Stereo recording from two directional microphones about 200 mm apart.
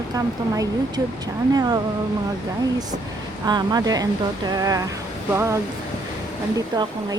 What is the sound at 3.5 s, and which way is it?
Speech, 20° right (ahead or behind).